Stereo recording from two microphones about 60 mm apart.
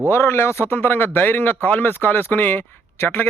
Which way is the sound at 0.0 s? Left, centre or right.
Left.